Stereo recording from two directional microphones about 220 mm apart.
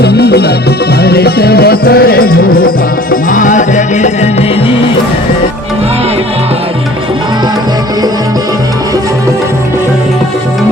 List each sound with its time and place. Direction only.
0.0 s music: 45° left (ahead or behind); by 4.7 s 30° left (ahead or behind)